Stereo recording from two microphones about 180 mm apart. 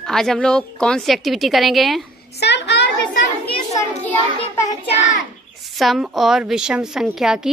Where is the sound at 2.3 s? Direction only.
70° left (ahead or behind).